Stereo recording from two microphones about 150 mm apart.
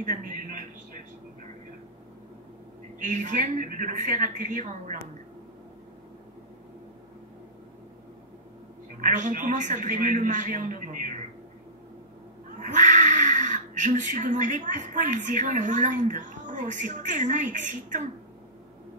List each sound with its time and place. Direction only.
0.0 s a sound: 60° right (ahead or behind)
3.0 s a man's voice: 55° right (ahead or behind)
9.0 s a man's voice: 60° right (ahead or behind)
12.5 s speech: 55° right (ahead or behind)